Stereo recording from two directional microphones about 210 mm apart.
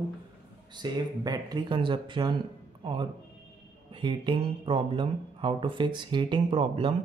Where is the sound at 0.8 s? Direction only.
20° right (ahead or behind).